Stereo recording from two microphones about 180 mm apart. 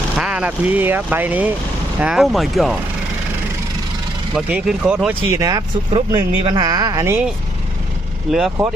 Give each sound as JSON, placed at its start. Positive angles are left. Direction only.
{"t": 0.2, "sound": "speech", "side_deg": -5}
{"t": 4.4, "sound": "speech", "side_deg": -5}
{"t": 8.3, "sound": "speech", "side_deg": 0}